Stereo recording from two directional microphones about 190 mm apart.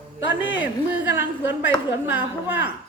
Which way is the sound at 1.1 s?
10° right (ahead or behind).